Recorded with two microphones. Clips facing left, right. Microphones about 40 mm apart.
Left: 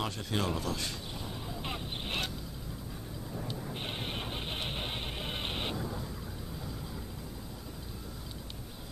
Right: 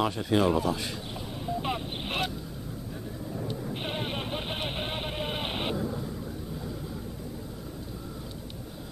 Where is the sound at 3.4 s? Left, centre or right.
Centre.